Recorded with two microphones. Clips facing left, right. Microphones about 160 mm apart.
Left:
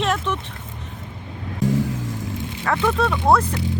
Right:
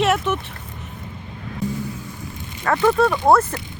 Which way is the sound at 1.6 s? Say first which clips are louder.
Left 5 dB; 90° left.